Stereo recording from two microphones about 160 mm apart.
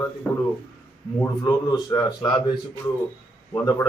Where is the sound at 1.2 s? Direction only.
20° left (ahead or behind).